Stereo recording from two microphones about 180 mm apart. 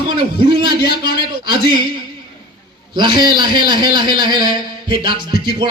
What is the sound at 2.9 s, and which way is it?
A man's voice, 25° right (ahead or behind).